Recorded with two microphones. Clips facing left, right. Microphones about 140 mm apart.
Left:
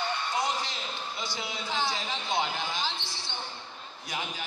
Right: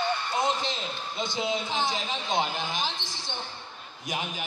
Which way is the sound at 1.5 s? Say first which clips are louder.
Right 2 dB; 20° right (ahead or behind).